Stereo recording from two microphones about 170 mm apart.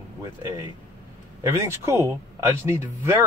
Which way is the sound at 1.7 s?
15° right (ahead or behind).